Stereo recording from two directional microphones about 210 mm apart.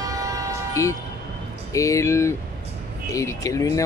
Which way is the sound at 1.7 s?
15° left (ahead or behind).